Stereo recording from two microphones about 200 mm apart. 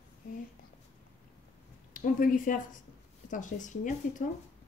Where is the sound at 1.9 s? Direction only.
45° left (ahead or behind).